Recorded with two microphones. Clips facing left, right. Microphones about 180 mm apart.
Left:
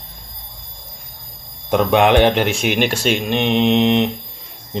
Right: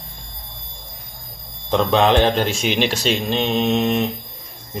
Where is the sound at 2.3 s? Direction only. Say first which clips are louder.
Left 2 dB; 65° left (ahead or behind).